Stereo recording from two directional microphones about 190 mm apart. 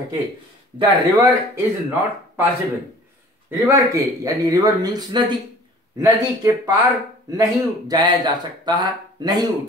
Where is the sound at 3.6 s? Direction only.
15° right (ahead or behind).